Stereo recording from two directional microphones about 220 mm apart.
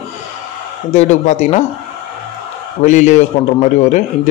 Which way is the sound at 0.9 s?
35° left (ahead or behind).